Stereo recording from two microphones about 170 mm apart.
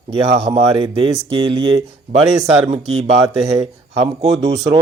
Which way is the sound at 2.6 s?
40° right (ahead or behind).